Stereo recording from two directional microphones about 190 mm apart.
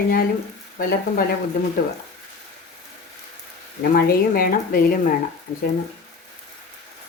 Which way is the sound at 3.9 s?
50° left (ahead or behind).